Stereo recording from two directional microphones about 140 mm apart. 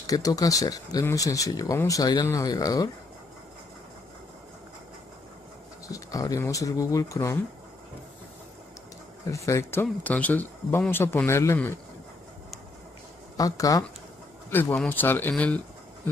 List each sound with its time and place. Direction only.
0.0 s speech: 25° left (ahead or behind)
5.9 s speech: 25° left (ahead or behind)
9.3 s speech: 20° left (ahead or behind)
13.4 s speech: 25° left (ahead or behind)
14.5 s speech: 15° left (ahead or behind)